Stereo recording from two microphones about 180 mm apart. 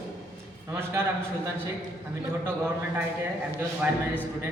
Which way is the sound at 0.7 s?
15° right (ahead or behind).